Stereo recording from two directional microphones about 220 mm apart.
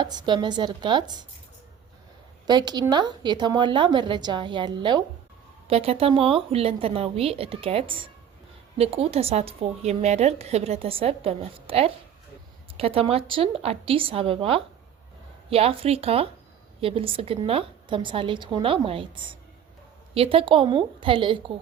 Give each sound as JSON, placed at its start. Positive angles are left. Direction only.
{"t": 0.0, "sound": "a woman's voice", "side_deg": -20}
{"t": 2.5, "sound": "a woman's voice", "side_deg": -20}